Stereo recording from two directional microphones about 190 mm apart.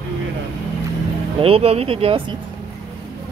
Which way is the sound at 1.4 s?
30° right (ahead or behind).